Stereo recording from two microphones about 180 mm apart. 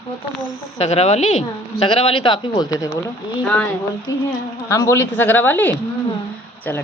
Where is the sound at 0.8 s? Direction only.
35° left (ahead or behind); by 3.0 s 20° left (ahead or behind).